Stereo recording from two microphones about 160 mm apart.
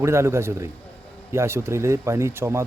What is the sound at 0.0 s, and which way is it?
A man's voice, 15° right (ahead or behind).